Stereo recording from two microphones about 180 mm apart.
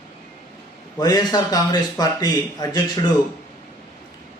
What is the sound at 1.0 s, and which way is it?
A man's voice, 25° left (ahead or behind).